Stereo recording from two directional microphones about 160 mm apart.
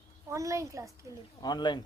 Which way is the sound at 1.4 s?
25° left (ahead or behind).